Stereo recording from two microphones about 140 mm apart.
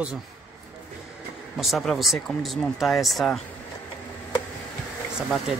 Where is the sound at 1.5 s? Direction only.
Centre (ahead or behind).